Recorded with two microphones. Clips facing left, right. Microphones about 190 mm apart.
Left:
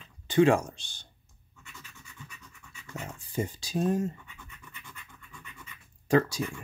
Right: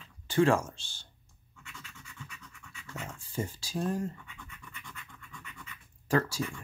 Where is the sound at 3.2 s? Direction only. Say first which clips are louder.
Left 4 dB; 20° left (ahead or behind).